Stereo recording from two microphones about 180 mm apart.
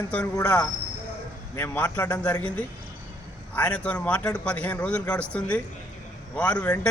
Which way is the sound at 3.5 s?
5° left (ahead or behind).